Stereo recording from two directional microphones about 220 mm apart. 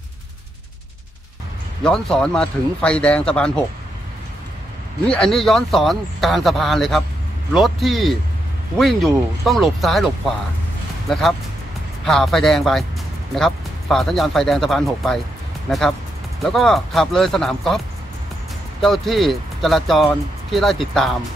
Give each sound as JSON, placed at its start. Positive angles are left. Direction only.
{"t": 1.8, "sound": "speech", "side_deg": 5}
{"t": 5.0, "sound": "speech", "side_deg": 5}
{"t": 16.4, "sound": "speech", "side_deg": 0}
{"t": 18.8, "sound": "speech", "side_deg": 0}